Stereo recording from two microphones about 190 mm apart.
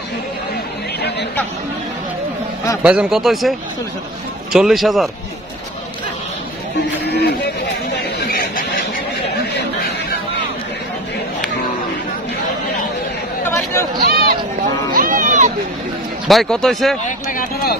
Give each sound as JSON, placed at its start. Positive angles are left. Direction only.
{"t": 2.8, "sound": "speech", "side_deg": -5}
{"t": 7.1, "sound": "chatter", "side_deg": 60}
{"t": 13.9, "sound": "a sound", "side_deg": -55}
{"t": 14.9, "sound": "run", "side_deg": -45}
{"t": 16.3, "sound": "speech", "side_deg": 0}
{"t": 17.3, "sound": "speech", "side_deg": 45}